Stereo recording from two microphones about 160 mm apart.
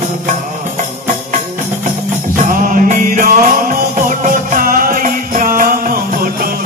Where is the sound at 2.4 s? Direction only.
55° right (ahead or behind).